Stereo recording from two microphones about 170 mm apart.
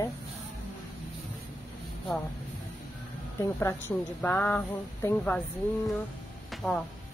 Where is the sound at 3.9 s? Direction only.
5° left (ahead or behind).